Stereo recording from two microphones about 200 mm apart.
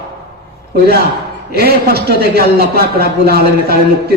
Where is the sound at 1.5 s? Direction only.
50° right (ahead or behind).